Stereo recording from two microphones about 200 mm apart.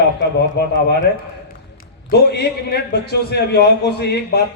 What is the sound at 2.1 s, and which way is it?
A man's voice, 55° left (ahead or behind).